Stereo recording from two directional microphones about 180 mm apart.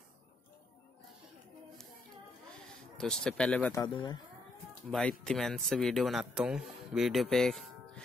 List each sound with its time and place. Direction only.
3.0 s speech: 5° left (ahead or behind)
3.7 s speech: 20° left (ahead or behind)
5.2 s speech: 5° left (ahead or behind)